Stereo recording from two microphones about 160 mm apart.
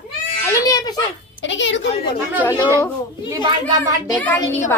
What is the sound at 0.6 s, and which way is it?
Speech, 20° left (ahead or behind).